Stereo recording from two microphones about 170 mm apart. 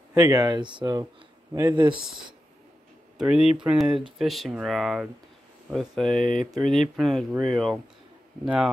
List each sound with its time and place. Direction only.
0.1 s speech: 20° right (ahead or behind)
3.2 s speech: 5° right (ahead or behind)